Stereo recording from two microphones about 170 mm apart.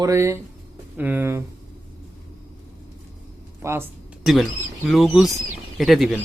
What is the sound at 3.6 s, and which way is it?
Speech, 15° right (ahead or behind).